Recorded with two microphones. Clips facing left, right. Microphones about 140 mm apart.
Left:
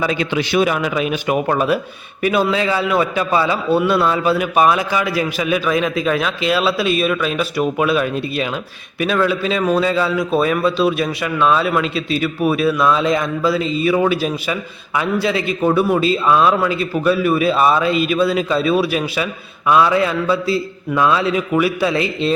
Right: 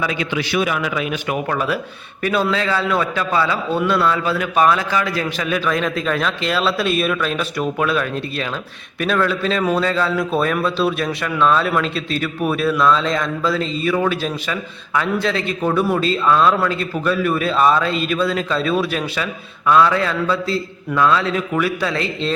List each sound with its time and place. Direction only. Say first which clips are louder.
0.0 s a man's voice: left 3 dB; 30° left (ahead or behind); by 22.3 s 10° left (ahead or behind)